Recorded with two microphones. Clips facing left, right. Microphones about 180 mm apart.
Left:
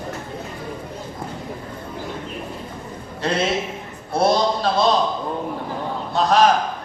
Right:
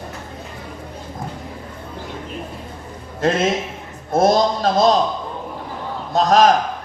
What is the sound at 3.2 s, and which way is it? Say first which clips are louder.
A man's voice: right 3 dB; 45° right (ahead or behind).